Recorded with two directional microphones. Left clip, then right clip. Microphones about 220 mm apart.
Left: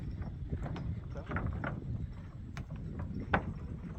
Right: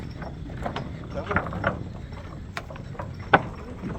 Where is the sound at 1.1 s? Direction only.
Centre (ahead or behind).